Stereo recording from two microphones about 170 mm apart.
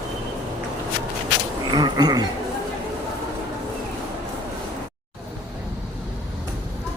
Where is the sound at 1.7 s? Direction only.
25° right (ahead or behind).